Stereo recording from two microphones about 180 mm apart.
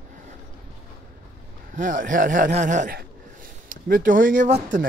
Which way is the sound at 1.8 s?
45° right (ahead or behind).